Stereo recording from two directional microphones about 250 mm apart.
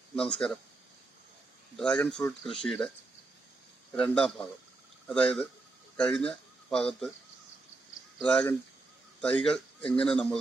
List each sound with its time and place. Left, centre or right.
0.2 s speech: centre
1.7 s speech: centre
3.9 s speech: centre
8.2 s speech: centre